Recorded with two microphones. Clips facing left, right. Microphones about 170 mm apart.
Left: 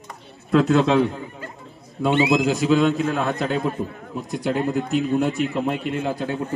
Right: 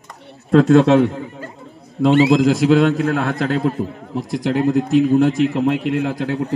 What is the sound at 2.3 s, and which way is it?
A man's voice, 90° right.